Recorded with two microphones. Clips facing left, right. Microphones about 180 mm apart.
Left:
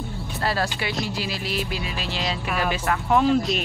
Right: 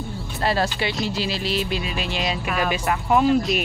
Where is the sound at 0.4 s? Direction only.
20° right (ahead or behind).